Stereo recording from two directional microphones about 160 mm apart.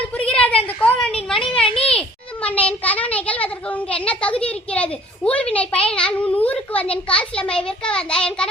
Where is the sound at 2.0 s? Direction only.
10° left (ahead or behind).